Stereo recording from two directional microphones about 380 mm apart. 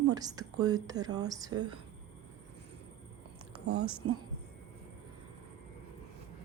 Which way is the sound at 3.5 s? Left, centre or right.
Right.